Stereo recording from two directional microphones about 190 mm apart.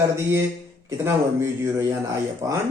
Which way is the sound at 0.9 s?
15° right (ahead or behind).